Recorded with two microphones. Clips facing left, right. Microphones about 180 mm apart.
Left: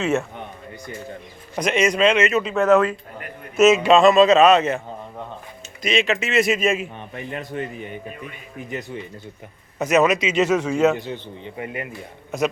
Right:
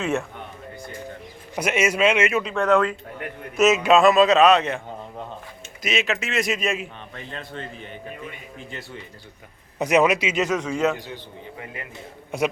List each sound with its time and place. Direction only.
0.0 s a man's voice: 5° left (ahead or behind)
1.5 s speech: 10° right (ahead or behind)
2.4 s a man's voice: 5° left (ahead or behind)
5.8 s a man's voice: 5° right (ahead or behind)
7.1 s a man's voice: 15° left (ahead or behind)
9.7 s speech: 15° right (ahead or behind)
10.4 s a man's voice: 5° left (ahead or behind)
11.6 s speech: 20° left (ahead or behind)